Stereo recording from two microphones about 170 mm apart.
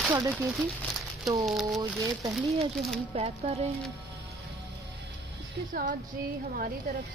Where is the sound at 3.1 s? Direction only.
35° right (ahead or behind).